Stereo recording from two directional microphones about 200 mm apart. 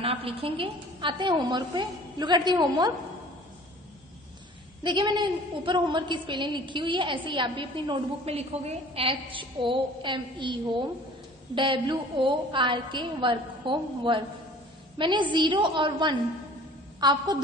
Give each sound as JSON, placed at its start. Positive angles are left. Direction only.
{"t": 0.0, "sound": "a woman's voice", "side_deg": -30}
{"t": 4.8, "sound": "a woman's voice", "side_deg": -20}